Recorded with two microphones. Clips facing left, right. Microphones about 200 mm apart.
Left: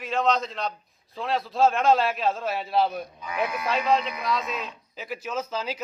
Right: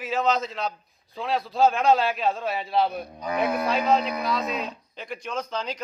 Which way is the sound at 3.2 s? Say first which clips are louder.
Right 5 dB; 40° right (ahead or behind).